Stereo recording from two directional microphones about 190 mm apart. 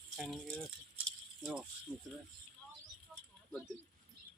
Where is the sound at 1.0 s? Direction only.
Centre (ahead or behind).